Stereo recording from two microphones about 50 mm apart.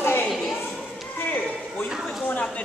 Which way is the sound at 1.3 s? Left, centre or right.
Left.